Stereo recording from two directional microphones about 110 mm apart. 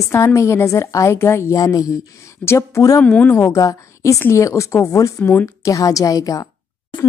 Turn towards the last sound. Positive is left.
turn(degrees=30)  # may be behind; listen again after turning